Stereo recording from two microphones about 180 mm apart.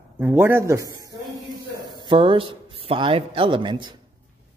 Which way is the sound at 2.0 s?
25° right (ahead or behind).